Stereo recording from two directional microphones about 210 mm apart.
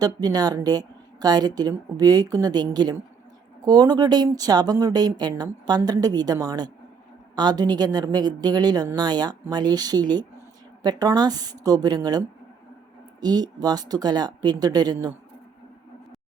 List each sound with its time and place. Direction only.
0.0 s speech: 20° right (ahead or behind)